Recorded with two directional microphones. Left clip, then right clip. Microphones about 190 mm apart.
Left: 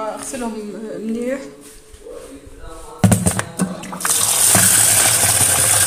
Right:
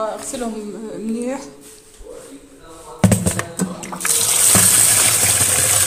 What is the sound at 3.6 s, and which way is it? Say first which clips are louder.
Music: left 1 dB; 10° right (ahead or behind).